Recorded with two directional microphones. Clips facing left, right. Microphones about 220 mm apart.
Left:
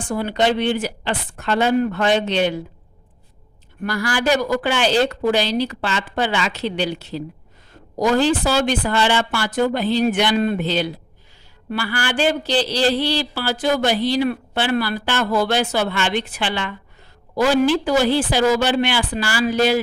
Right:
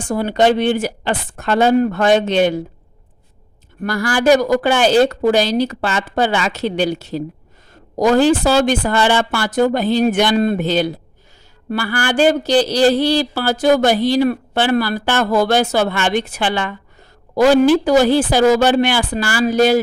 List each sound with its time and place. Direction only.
0.1 s speech: 45° right (ahead or behind)
3.8 s speech: 45° right (ahead or behind)